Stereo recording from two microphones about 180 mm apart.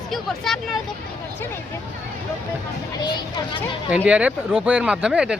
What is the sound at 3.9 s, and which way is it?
Speech, 5° right (ahead or behind).